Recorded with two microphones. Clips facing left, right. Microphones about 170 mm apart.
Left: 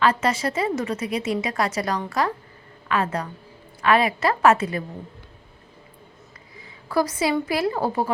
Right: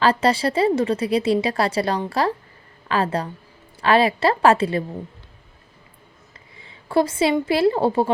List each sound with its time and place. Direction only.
0.0 s a woman's voice: 30° right (ahead or behind)
6.6 s a woman's voice: 25° right (ahead or behind)